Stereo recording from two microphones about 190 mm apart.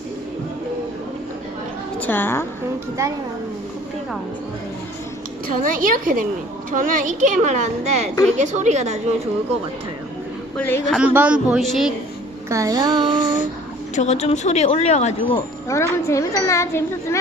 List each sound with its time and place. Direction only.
2.0 s a woman's voice: 10° left (ahead or behind)
5.6 s a woman's voice: 45° right (ahead or behind)
10.6 s speech: 10° left (ahead or behind)
10.9 s a woman's voice: 10° right (ahead or behind)
12.5 s a sound: 15° right (ahead or behind)
13.9 s speech: 35° left (ahead or behind)
15.7 s speech: 15° left (ahead or behind)